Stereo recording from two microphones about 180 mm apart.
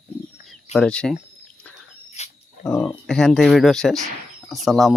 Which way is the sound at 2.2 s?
40° left (ahead or behind).